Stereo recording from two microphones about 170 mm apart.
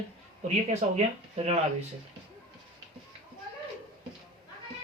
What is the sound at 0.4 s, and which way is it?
Speech, 40° right (ahead or behind).